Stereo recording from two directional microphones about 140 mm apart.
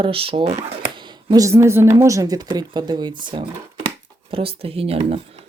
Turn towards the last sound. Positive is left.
turn(degrees=-45)  # may be behind; listen again after turning